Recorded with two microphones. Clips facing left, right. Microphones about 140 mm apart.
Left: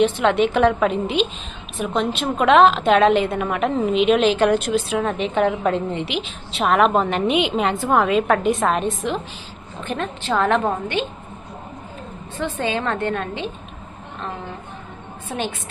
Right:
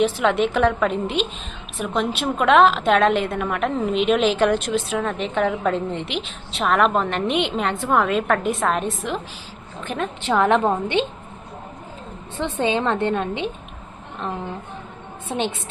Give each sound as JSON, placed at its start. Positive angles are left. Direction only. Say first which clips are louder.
{"t": 0.0, "sound": "a woman's voice", "louder": "left 2 dB", "side_deg": 0}
{"t": 12.4, "sound": "a woman's voice", "louder": "right 2 dB", "side_deg": -20}